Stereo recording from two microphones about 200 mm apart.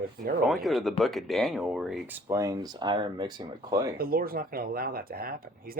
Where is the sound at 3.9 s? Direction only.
45° right (ahead or behind).